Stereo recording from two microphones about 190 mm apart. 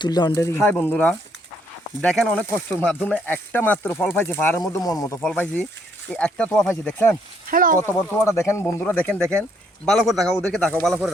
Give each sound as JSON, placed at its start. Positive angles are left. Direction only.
{"t": 0.0, "sound": "speech", "side_deg": 20}
{"t": 5.2, "sound": "speech", "side_deg": 5}
{"t": 7.4, "sound": "speech", "side_deg": -45}
{"t": 7.8, "sound": "speech", "side_deg": 15}